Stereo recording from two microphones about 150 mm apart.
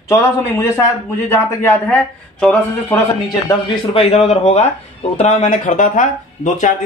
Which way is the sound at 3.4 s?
40° left (ahead or behind).